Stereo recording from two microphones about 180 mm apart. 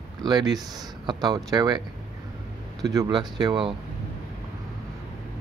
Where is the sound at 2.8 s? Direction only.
20° right (ahead or behind).